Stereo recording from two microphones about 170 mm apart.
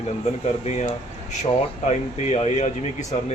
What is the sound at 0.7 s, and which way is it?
Speech, 40° left (ahead or behind).